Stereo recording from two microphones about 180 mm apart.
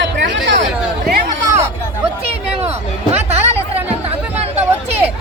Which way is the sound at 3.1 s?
35° right (ahead or behind).